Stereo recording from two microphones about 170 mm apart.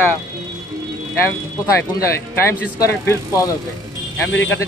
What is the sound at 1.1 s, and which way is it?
Speech, 15° left (ahead or behind).